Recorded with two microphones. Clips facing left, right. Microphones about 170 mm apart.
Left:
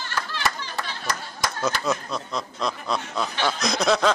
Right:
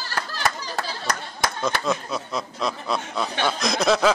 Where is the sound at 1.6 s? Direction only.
Centre (ahead or behind).